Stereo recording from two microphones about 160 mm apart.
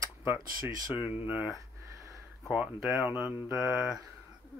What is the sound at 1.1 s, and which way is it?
Speech, 10° right (ahead or behind).